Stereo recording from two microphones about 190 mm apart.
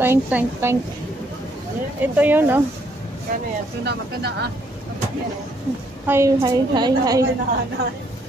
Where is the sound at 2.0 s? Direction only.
10° right (ahead or behind).